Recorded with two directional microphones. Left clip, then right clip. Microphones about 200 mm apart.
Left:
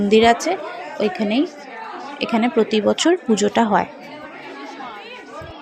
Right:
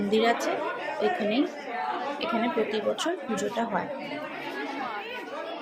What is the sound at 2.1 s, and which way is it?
A woman's voice, 40° left (ahead or behind).